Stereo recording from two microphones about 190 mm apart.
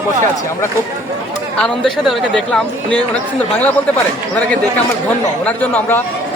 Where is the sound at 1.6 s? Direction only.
5° left (ahead or behind).